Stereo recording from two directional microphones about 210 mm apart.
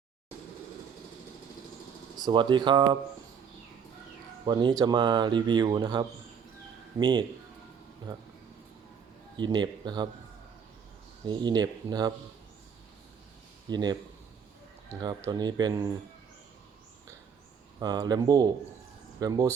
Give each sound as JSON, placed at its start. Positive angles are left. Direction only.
{"t": 2.1, "sound": "speech", "side_deg": -20}
{"t": 4.4, "sound": "speech", "side_deg": -20}
{"t": 9.3, "sound": "speech", "side_deg": -20}
{"t": 11.3, "sound": "speech", "side_deg": -20}
{"t": 13.7, "sound": "speech", "side_deg": -20}
{"t": 17.7, "sound": "speech", "side_deg": -20}